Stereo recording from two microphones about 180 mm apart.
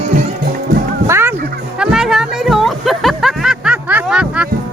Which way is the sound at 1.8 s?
5° right (ahead or behind).